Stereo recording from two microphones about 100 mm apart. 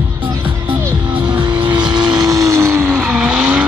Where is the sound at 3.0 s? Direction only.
10° right (ahead or behind).